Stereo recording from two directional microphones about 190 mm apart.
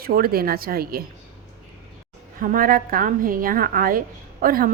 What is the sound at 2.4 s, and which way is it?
A woman's voice, 45° right (ahead or behind).